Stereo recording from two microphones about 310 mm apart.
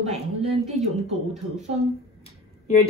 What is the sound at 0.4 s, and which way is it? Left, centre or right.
Speech, centre.